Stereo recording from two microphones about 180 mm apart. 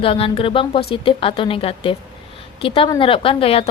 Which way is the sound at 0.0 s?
30° left (ahead or behind).